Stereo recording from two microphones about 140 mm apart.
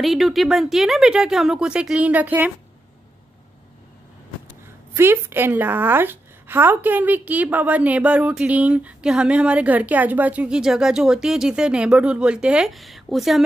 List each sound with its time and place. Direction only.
0.0 s speech: centre (ahead or behind)
4.9 s a woman's voice: 15° right (ahead or behind); by 13.4 s centre (ahead or behind)